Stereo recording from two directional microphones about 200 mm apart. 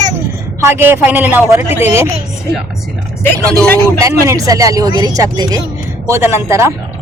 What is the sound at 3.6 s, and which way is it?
Speech, 10° left (ahead or behind).